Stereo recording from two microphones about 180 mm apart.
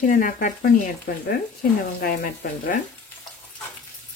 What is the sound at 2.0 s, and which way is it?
Speech, 55° left (ahead or behind).